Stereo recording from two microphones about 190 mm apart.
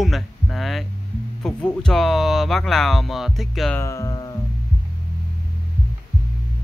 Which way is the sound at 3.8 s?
15° left (ahead or behind).